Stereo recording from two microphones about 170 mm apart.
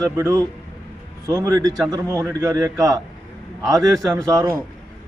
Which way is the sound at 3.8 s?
5° left (ahead or behind).